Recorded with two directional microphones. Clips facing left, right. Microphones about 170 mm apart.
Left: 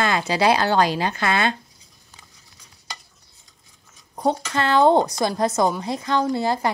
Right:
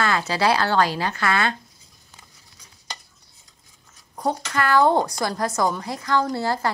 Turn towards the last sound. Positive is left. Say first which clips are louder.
# left 2 dB
turn(degrees=20)  # may be behind; listen again after turning